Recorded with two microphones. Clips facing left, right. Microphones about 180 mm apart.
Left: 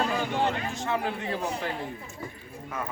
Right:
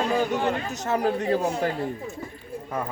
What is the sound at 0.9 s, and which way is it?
Speech, 40° right (ahead or behind).